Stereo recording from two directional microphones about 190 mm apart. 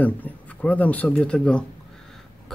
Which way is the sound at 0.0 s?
10° left (ahead or behind).